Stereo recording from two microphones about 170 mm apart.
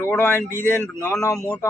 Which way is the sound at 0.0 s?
15° left (ahead or behind).